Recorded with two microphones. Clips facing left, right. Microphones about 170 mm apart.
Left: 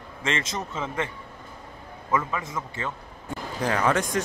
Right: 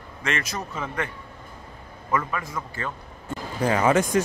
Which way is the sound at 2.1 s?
20° left (ahead or behind).